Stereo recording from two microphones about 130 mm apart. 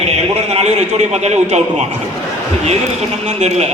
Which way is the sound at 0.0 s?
55° right (ahead or behind).